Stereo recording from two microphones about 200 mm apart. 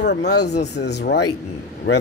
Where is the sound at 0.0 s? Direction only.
60° left (ahead or behind).